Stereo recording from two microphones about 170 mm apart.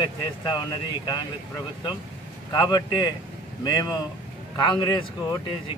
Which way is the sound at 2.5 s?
25° left (ahead or behind).